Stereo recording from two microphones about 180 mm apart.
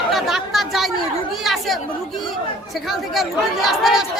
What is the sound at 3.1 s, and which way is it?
Speech, centre (ahead or behind).